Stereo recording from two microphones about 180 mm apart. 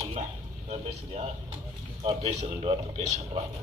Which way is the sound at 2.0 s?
35° right (ahead or behind).